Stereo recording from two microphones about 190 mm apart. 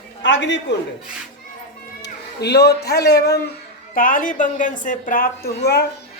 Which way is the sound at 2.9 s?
60° left (ahead or behind).